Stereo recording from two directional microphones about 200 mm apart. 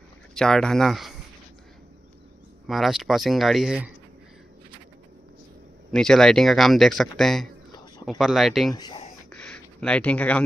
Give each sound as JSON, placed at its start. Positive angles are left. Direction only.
{"t": 0.3, "sound": "speech", "side_deg": 5}
{"t": 2.6, "sound": "speech", "side_deg": 0}
{"t": 5.9, "sound": "speech", "side_deg": 5}
{"t": 8.7, "sound": "speech", "side_deg": 20}
{"t": 9.3, "sound": "a sound", "side_deg": 5}